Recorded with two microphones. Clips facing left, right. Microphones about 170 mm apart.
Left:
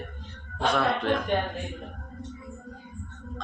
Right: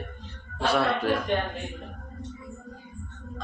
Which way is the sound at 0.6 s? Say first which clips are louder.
Right 1 dB; 5° right (ahead or behind).